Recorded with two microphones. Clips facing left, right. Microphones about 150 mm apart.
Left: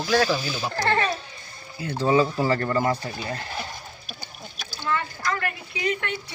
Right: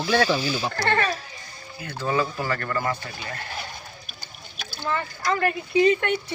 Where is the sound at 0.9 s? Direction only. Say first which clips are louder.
Even; 25° left (ahead or behind).